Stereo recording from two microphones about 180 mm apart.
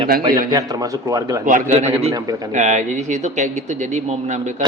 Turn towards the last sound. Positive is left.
turn(degrees=-40)  # may be behind; listen again after turning